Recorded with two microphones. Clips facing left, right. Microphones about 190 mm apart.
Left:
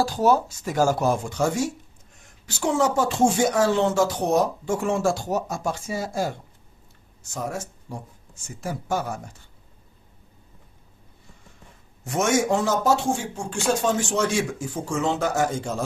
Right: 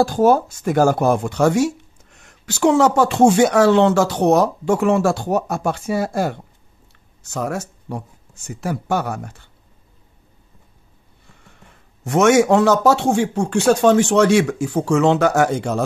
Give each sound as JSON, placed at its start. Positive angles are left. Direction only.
{"t": 0.0, "sound": "speech", "side_deg": -55}
{"t": 12.0, "sound": "speech", "side_deg": -70}